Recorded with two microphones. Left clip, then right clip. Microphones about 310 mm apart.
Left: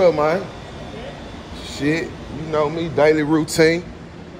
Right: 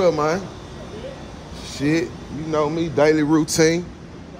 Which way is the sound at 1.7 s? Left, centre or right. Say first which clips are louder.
Even; centre.